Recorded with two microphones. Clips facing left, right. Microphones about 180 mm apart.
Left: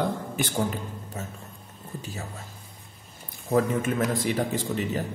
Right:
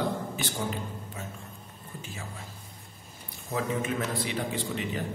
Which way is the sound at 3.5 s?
45° left (ahead or behind).